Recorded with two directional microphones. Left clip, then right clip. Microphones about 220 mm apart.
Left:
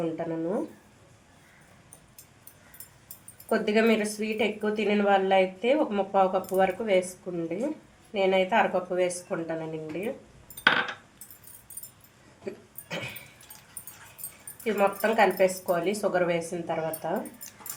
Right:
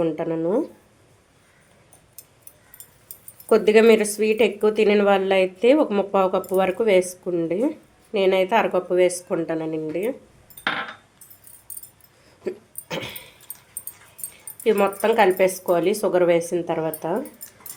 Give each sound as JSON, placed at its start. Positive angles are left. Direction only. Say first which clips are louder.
{"t": 0.0, "sound": "a woman's voice", "louder": "right 7 dB", "side_deg": -45}
{"t": 3.5, "sound": "a woman's voice", "louder": "right 9 dB", "side_deg": -50}
{"t": 12.5, "sound": "dog", "louder": "right 7 dB", "side_deg": -45}
{"t": 14.6, "sound": "a woman's voice", "louder": "right 6 dB", "side_deg": -45}